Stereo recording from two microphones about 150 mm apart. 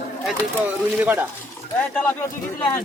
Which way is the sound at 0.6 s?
10° right (ahead or behind).